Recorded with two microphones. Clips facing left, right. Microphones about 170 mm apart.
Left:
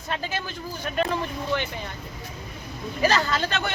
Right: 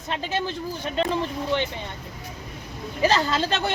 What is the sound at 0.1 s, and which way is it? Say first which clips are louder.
Speech: right 3 dB; 25° right (ahead or behind).